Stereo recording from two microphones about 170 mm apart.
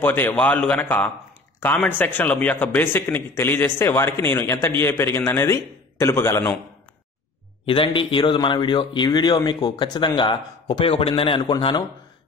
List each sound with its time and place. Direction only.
0.0 s a man's voice: 10° left (ahead or behind)
7.6 s speech: 30° left (ahead or behind)